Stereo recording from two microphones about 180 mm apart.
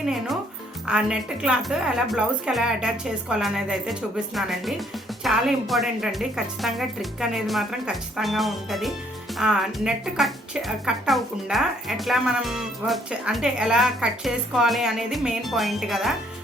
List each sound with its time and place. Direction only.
0.0 s speech: centre (ahead or behind)